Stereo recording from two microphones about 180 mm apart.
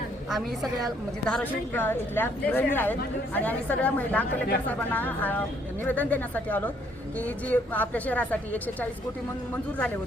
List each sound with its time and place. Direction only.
0.3 s a woman's voice: centre (ahead or behind)
1.3 s a woman's voice: 10° left (ahead or behind)